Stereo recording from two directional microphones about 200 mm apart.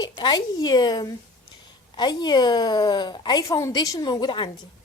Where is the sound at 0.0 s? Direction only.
20° left (ahead or behind).